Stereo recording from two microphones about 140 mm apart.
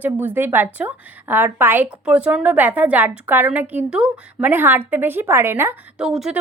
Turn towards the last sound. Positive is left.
turn(degrees=-5)  # may be behind; listen again after turning